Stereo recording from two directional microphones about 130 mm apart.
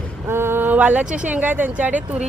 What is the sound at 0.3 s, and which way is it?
Speech, 20° right (ahead or behind).